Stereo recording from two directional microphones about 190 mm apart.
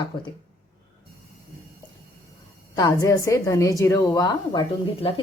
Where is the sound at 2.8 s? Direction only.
20° left (ahead or behind).